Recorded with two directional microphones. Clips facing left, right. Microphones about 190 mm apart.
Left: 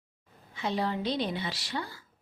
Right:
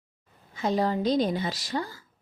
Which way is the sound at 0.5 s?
45° right (ahead or behind).